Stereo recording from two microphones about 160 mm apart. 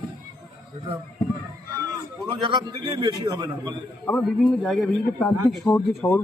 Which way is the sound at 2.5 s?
25° right (ahead or behind).